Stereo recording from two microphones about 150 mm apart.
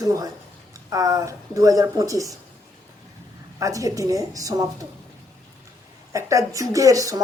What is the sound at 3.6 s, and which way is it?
Speech, 20° right (ahead or behind).